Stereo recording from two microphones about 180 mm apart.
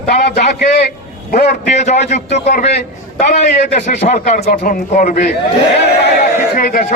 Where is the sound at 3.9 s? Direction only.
40° left (ahead or behind).